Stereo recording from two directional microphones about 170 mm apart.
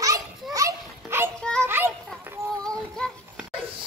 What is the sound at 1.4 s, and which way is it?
Children playing, 5° left (ahead or behind).